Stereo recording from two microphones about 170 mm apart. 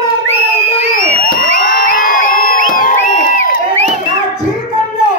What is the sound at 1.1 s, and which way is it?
Crowd, 55° left (ahead or behind).